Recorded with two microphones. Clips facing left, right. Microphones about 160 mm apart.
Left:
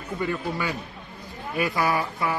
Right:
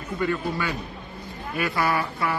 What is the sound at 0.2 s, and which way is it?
Speech, 15° left (ahead or behind).